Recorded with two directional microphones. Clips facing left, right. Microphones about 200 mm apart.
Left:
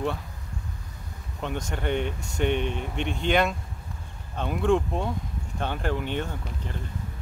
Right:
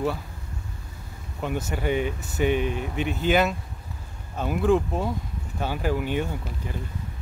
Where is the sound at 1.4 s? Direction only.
5° right (ahead or behind).